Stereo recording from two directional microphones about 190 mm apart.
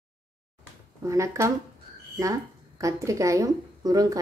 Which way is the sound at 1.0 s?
15° right (ahead or behind).